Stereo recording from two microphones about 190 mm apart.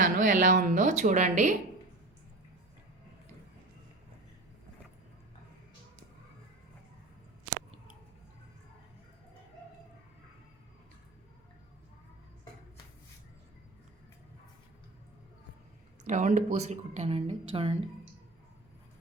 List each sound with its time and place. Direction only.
0.0 s a woman's voice: 40° right (ahead or behind)
16.0 s a woman's voice: 40° right (ahead or behind)